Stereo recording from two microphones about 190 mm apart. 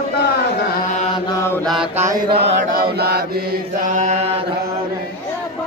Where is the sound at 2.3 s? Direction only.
60° right (ahead or behind); by 4.4 s 35° right (ahead or behind).